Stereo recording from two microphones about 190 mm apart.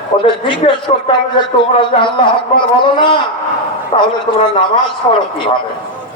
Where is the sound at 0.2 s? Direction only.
25° left (ahead or behind).